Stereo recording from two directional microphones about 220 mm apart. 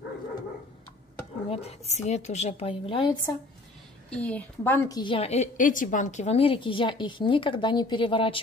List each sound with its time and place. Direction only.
1.5 s a woman's voice: 30° left (ahead or behind)
4.1 s a woman's voice: 5° left (ahead or behind); by 8.4 s 25° left (ahead or behind)